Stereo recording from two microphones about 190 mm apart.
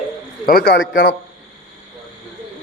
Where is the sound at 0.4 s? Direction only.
55° left (ahead or behind).